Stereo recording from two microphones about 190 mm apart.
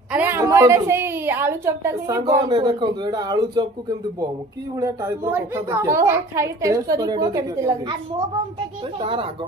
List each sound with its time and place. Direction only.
0.1 s a woman's voice: 10° right (ahead or behind)
4.7 s a woman's voice: 15° right (ahead or behind)
9.0 s speech: 30° right (ahead or behind)